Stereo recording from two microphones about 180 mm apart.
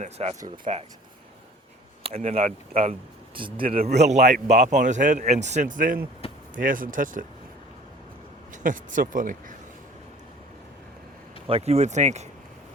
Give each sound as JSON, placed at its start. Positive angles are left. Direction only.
{"t": 0.0, "sound": "speech", "side_deg": -35}
{"t": 0.3, "sound": "speech", "side_deg": -20}
{"t": 0.6, "sound": "speech", "side_deg": -35}
{"t": 2.0, "sound": "speech", "side_deg": -35}
{"t": 3.9, "sound": "speech", "side_deg": -40}
{"t": 6.2, "sound": "a sound", "side_deg": 30}
{"t": 6.6, "sound": "speech", "side_deg": -50}
{"t": 8.6, "sound": "speech", "side_deg": -45}
{"t": 11.4, "sound": "speech", "side_deg": -35}